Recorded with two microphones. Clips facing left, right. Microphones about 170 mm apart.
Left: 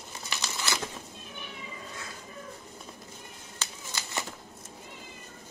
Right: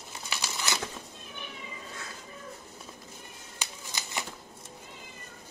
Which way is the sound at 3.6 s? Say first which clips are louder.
Even; 15° right (ahead or behind).